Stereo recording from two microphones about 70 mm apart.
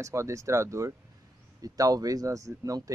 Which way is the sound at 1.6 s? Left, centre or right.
Right.